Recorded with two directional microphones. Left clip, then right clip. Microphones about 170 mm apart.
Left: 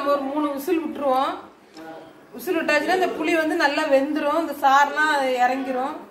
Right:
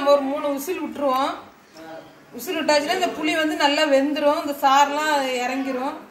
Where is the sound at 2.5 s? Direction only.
10° left (ahead or behind).